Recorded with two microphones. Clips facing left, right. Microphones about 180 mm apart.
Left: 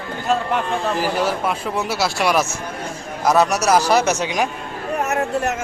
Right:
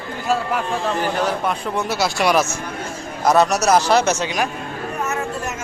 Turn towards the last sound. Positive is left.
turn(degrees=65)  # may be behind; listen again after turning